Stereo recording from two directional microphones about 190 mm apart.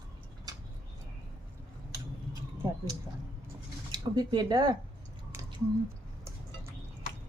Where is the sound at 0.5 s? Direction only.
20° right (ahead or behind).